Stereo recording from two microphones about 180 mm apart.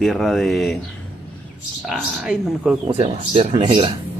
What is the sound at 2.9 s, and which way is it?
Speech, 30° right (ahead or behind).